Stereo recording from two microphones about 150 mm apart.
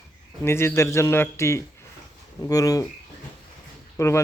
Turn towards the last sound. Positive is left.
turn(degrees=20)  # may be behind; listen again after turning